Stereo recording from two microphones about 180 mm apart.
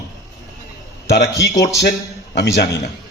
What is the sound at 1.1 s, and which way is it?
A man's voice, 65° left (ahead or behind).